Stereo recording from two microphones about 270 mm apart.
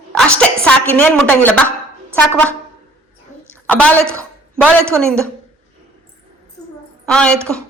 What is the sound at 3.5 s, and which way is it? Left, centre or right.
Speech, centre.